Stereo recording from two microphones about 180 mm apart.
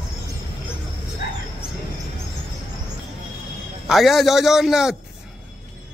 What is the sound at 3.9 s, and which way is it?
A man's voice, centre (ahead or behind).